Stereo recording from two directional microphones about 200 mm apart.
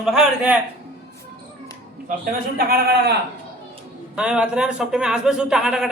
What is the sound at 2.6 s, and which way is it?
Speech, 50° right (ahead or behind).